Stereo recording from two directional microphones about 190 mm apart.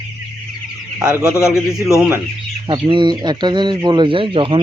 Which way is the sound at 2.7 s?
25° right (ahead or behind).